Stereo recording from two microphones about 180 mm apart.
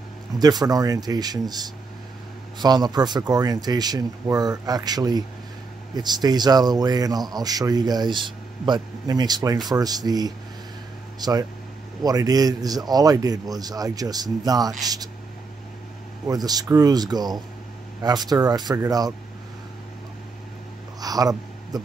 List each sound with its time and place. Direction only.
0.4 s speech: 20° right (ahead or behind)
2.6 s speech: 20° right (ahead or behind)
16.3 s speech: 20° right (ahead or behind)
21.0 s a sound: 20° right (ahead or behind)